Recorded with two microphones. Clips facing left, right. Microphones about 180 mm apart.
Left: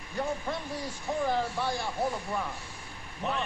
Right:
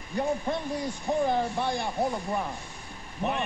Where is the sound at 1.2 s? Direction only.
20° right (ahead or behind).